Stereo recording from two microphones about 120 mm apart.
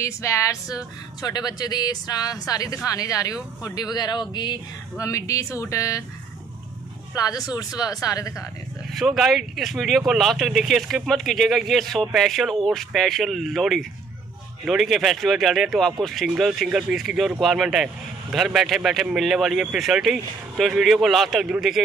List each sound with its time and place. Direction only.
0.0 s speech: 25° left (ahead or behind)
7.2 s speech: 30° left (ahead or behind)
8.9 s speech: centre (ahead or behind)